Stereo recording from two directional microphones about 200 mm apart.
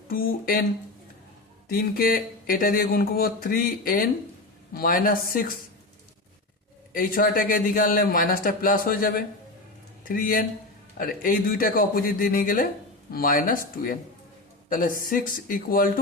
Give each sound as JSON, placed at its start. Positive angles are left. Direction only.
{"t": 0.1, "sound": "speech", "side_deg": 50}
{"t": 1.7, "sound": "speech", "side_deg": 45}
{"t": 6.9, "sound": "speech", "side_deg": 45}